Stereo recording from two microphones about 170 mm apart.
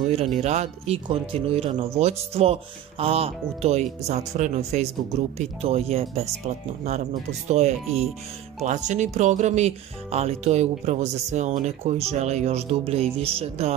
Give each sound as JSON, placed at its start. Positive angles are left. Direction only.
{"t": 0.4, "sound": "speech", "side_deg": -40}
{"t": 7.4, "sound": "speech", "side_deg": -40}